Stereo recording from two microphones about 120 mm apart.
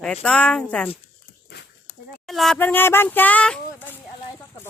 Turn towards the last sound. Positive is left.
turn(degrees=15)  # may be behind; listen again after turning